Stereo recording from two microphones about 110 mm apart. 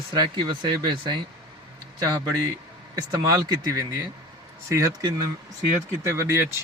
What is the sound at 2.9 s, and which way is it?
Speech, 40° right (ahead or behind).